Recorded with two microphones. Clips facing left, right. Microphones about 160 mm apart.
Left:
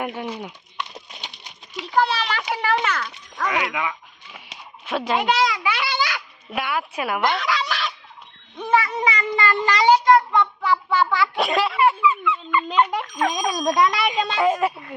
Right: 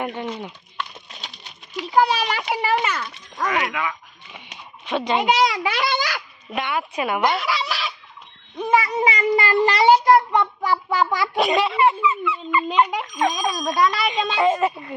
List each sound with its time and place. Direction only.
0.0 s speech: 10° left (ahead or behind)
1.9 s a child's voice: 15° right (ahead or behind)
3.4 s speech: 10° left (ahead or behind)
4.9 s a child's voice: 5° left (ahead or behind)
5.5 s a child's voice: 35° right (ahead or behind)
6.5 s a child's voice: 5° left (ahead or behind)
7.3 s speech: 10° right (ahead or behind)
8.5 s speech: 15° right (ahead or behind)
9.0 s a child's voice: 30° right (ahead or behind)
9.6 s a sound: 20° right (ahead or behind)
10.3 s child singing: 35° right (ahead or behind)
11.3 s a child's voice: centre (ahead or behind)